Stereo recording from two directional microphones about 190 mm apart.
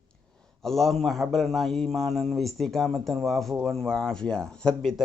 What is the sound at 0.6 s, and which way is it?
Speech, centre (ahead or behind).